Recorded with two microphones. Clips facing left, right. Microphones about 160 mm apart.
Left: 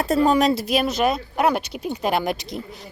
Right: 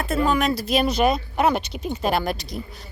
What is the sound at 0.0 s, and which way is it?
Speech, 40° left (ahead or behind).